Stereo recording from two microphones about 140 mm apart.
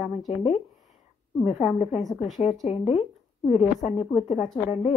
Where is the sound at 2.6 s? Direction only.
45° left (ahead or behind).